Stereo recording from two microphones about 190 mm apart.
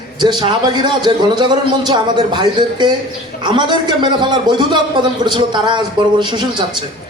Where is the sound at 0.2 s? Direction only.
25° right (ahead or behind).